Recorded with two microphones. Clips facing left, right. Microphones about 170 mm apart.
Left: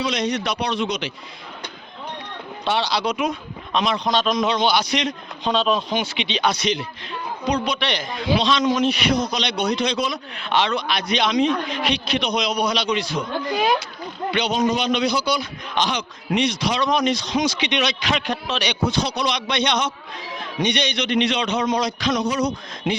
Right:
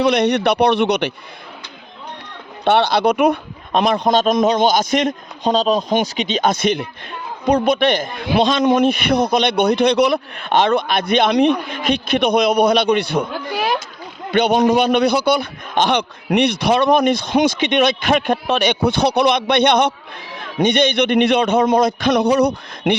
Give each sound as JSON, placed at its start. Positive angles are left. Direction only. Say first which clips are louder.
{"t": 0.0, "sound": "a man's voice", "louder": "right 8 dB", "side_deg": -60}
{"t": 2.6, "sound": "a man's voice", "louder": "right 8 dB", "side_deg": -55}
{"t": 11.7, "sound": "a man's voice", "louder": "right 4 dB", "side_deg": -50}
{"t": 13.3, "sound": "speech", "louder": "even", "side_deg": -5}
{"t": 14.3, "sound": "a man's voice", "louder": "right 7 dB", "side_deg": -55}